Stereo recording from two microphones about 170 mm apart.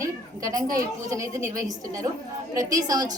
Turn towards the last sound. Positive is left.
turn(degrees=-20)  # may be behind; listen again after turning